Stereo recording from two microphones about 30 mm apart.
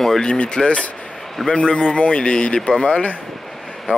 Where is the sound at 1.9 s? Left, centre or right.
Left.